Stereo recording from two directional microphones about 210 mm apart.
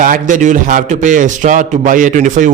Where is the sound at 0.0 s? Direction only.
40° right (ahead or behind).